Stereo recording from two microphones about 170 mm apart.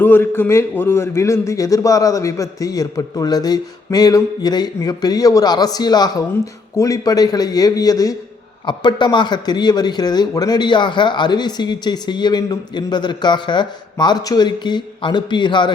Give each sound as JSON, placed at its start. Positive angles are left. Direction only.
{"t": 0.0, "sound": "a man's voice", "side_deg": 10}